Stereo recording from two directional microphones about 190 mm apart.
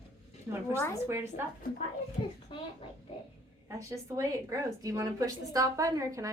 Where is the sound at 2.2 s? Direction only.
30° left (ahead or behind).